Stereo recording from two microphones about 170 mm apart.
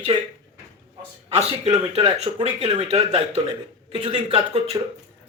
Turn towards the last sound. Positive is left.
turn(degrees=-35)  # may be behind; listen again after turning